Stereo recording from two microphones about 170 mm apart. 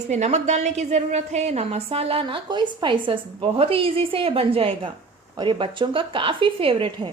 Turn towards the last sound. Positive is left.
turn(degrees=-30)  # may be behind; listen again after turning